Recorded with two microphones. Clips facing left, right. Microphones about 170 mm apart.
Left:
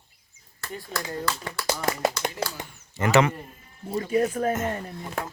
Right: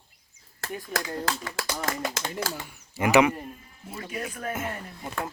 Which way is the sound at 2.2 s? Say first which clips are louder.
Left 4 dB; 90° right.